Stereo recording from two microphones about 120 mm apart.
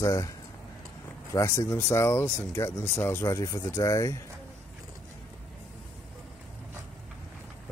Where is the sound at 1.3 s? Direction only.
25° left (ahead or behind).